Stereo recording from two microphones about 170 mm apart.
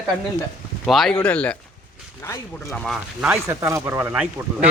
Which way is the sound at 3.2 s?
10° right (ahead or behind).